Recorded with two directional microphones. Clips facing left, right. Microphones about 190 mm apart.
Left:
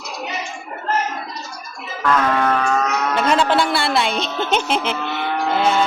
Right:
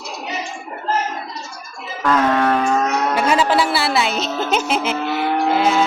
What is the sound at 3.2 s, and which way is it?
A woman's voice, 5° right (ahead or behind).